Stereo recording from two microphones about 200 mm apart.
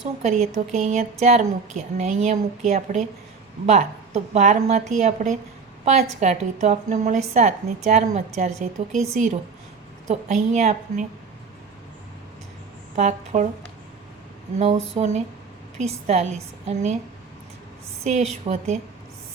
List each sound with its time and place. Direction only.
0.0 s a woman's voice: 35° right (ahead or behind)
10.1 s a woman's voice: 35° right (ahead or behind)
13.0 s a woman's voice: 35° right (ahead or behind)
14.6 s a woman's voice: 30° right (ahead or behind)
18.0 s a woman's voice: 35° right (ahead or behind)